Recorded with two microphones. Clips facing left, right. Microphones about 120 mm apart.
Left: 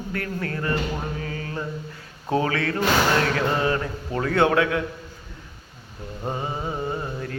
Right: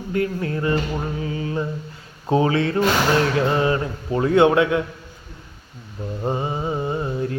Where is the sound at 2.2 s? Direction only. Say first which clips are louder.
Right 4 dB; 25° right (ahead or behind).